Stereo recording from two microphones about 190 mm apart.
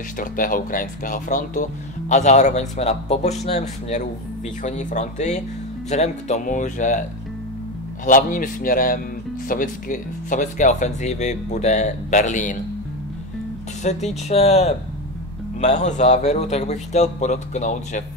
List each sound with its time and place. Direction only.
0.2 s speech: 45° left (ahead or behind)
13.8 s speech: 35° left (ahead or behind)